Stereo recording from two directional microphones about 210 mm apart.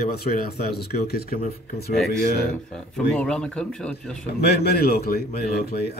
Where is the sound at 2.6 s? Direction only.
5° left (ahead or behind).